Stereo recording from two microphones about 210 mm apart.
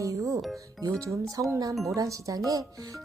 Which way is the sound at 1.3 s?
15° right (ahead or behind).